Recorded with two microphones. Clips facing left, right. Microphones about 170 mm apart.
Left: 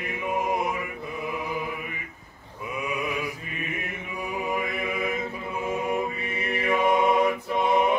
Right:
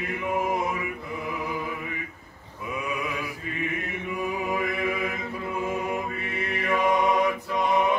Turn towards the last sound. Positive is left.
turn(degrees=30)  # may be behind; listen again after turning